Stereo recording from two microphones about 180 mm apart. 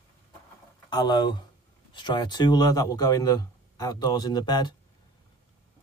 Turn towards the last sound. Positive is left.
turn(degrees=25)  # may be behind; listen again after turning